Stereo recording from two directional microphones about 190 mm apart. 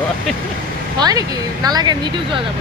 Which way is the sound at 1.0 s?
20° right (ahead or behind).